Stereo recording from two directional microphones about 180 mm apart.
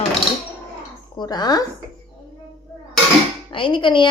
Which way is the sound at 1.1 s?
20° left (ahead or behind).